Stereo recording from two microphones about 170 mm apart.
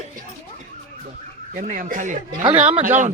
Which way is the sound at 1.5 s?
50° right (ahead or behind).